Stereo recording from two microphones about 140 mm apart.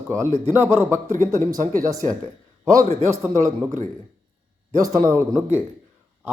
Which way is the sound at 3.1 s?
20° right (ahead or behind).